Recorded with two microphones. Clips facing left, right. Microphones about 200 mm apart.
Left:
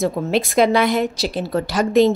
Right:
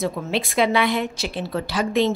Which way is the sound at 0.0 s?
45° left (ahead or behind).